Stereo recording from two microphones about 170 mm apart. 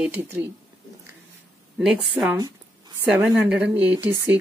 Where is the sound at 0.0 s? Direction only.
10° right (ahead or behind).